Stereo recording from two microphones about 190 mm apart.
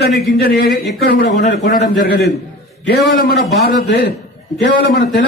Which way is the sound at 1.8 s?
45° left (ahead or behind).